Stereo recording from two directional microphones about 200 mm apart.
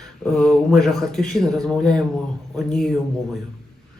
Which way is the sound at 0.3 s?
Centre (ahead or behind).